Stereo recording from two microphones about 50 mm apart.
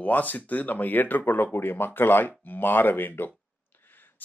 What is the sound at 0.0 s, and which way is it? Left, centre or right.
Speech, left.